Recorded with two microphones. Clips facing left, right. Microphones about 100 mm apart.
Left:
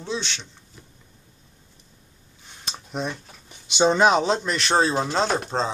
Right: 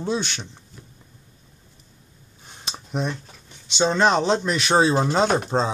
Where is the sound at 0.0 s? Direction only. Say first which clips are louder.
Right 4 dB; 50° right (ahead or behind).